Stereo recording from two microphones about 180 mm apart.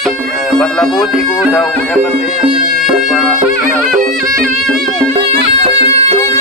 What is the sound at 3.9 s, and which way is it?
Music, 45° right (ahead or behind).